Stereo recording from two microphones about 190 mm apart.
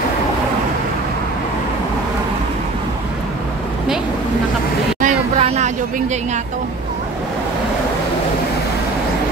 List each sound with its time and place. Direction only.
5.0 s hubbub: 35° right (ahead or behind)